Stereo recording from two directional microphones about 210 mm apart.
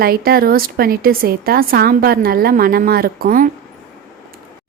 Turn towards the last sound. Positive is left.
turn(degrees=-45)  # may be behind; listen again after turning